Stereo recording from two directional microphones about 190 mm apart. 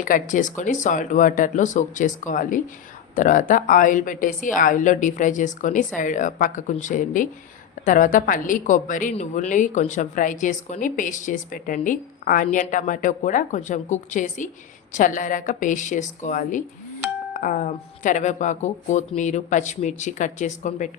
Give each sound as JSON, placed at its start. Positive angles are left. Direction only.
{"t": 0.0, "sound": "speech", "side_deg": 45}